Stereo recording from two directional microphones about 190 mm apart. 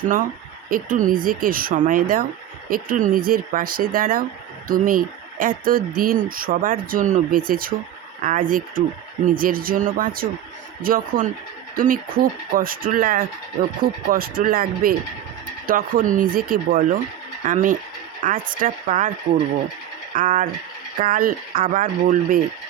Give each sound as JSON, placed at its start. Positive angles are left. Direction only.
{"t": 0.7, "sound": "speech", "side_deg": -45}
{"t": 20.1, "sound": "speech", "side_deg": -45}